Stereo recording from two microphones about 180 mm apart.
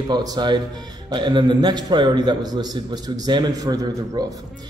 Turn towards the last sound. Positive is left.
turn(degrees=-20)  # may be behind; listen again after turning